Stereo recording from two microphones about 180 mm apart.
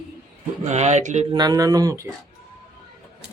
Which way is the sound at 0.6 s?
40° right (ahead or behind).